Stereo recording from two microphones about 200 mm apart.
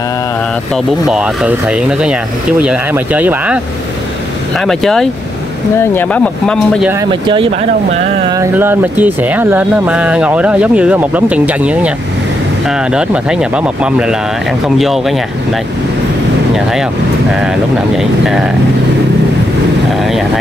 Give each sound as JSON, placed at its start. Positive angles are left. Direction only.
{"t": 1.0, "sound": "speech", "side_deg": -5}
{"t": 6.9, "sound": "speech", "side_deg": -20}
{"t": 8.3, "sound": "speech", "side_deg": -15}
{"t": 17.9, "sound": "speech", "side_deg": -5}
{"t": 20.0, "sound": "speech", "side_deg": 0}